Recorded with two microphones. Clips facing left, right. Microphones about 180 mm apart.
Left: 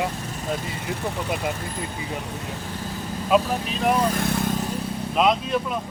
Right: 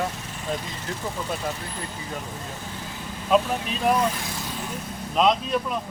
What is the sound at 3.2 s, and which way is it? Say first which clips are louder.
Speech: left 1 dB; 5° left (ahead or behind).